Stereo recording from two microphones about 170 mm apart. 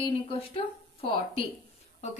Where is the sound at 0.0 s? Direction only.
30° left (ahead or behind).